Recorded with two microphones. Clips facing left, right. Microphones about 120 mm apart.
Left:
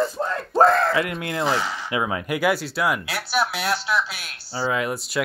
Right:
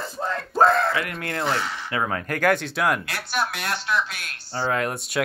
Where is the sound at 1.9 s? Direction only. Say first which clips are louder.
Left 1 dB; 10° left (ahead or behind).